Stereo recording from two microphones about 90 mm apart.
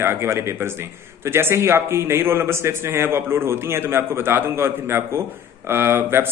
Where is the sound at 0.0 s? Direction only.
30° right (ahead or behind).